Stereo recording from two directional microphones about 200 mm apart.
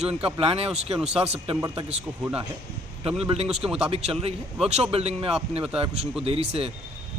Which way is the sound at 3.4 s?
5° right (ahead or behind).